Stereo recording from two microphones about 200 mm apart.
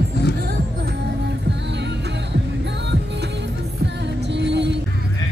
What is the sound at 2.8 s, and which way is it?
Music, 60° right (ahead or behind).